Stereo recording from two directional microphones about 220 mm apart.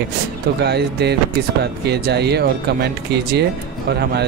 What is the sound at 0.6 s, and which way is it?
Speech, 50° right (ahead or behind).